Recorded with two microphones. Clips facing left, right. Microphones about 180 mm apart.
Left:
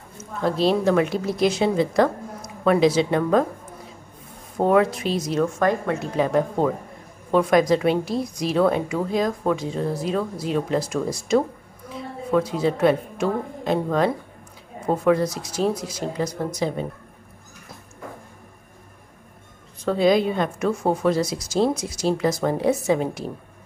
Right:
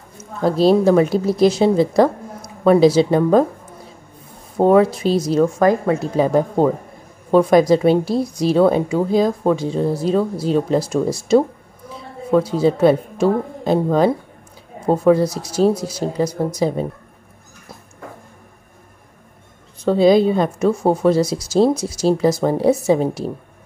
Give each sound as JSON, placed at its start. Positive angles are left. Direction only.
{"t": 0.4, "sound": "speech", "side_deg": -40}
{"t": 4.6, "sound": "speech", "side_deg": -30}
{"t": 19.8, "sound": "speech", "side_deg": -30}